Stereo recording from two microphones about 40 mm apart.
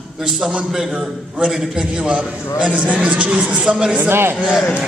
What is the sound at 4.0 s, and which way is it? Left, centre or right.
Speech, right.